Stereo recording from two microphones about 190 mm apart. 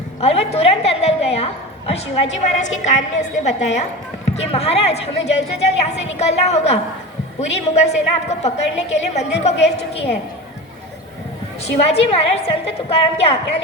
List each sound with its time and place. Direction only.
0.2 s a woman's voice: 30° left (ahead or behind)
11.6 s a woman's voice: 30° left (ahead or behind)